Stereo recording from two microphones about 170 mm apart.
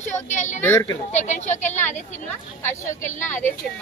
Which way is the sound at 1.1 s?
45° left (ahead or behind).